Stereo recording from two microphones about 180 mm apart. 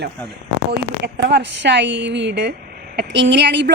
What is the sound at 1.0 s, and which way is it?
A woman's voice, 75° right (ahead or behind).